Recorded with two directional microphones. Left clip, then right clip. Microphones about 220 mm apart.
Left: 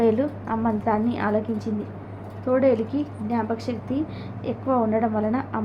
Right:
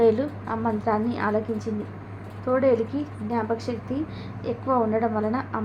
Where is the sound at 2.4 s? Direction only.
25° left (ahead or behind).